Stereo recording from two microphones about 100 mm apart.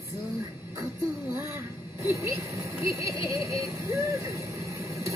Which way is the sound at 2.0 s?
30° right (ahead or behind).